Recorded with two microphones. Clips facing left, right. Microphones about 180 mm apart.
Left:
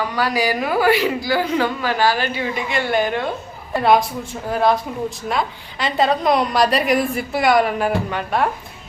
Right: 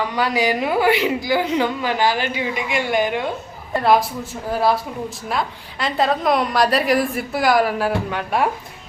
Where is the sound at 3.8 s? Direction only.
Centre (ahead or behind).